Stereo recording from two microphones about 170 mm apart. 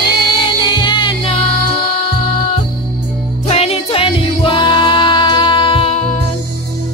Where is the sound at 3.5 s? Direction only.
35° left (ahead or behind).